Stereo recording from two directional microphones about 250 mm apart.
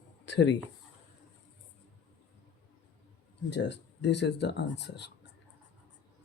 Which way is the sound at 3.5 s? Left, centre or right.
Left.